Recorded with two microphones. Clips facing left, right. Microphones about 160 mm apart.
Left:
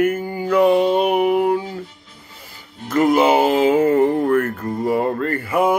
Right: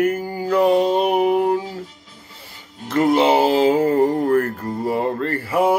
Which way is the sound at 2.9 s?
30° right (ahead or behind).